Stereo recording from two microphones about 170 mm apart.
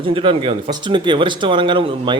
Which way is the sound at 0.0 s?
30° right (ahead or behind).